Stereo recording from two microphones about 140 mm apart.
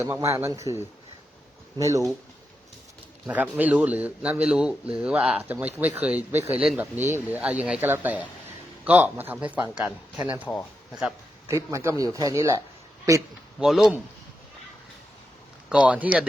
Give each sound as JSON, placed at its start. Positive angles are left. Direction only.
{"t": 0.0, "sound": "speech", "side_deg": -20}
{"t": 3.2, "sound": "a man's voice", "side_deg": -10}
{"t": 13.6, "sound": "a man's voice", "side_deg": -5}
{"t": 15.7, "sound": "a man's voice", "side_deg": -10}